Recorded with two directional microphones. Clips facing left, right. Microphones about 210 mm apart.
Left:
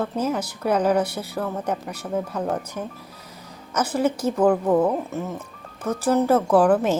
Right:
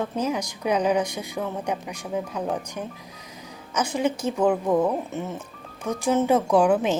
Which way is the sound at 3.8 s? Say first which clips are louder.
Left 3 dB; 10° right (ahead or behind).